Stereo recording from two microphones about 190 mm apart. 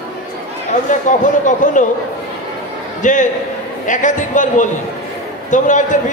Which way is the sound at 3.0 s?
40° left (ahead or behind).